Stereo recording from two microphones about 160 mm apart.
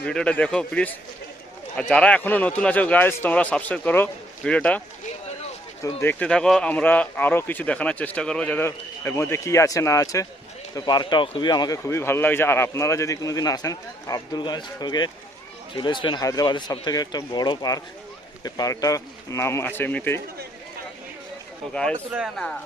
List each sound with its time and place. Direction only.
0.0 s speech: 5° left (ahead or behind)
6.0 s speech: 10° left (ahead or behind)
21.7 s speech: 5° left (ahead or behind)